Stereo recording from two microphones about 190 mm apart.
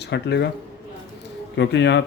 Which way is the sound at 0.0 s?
65° left (ahead or behind).